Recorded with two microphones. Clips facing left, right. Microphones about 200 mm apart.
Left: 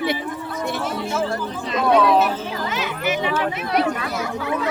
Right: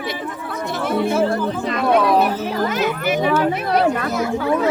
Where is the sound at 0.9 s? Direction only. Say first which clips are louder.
Right 6 dB; 55° right (ahead or behind).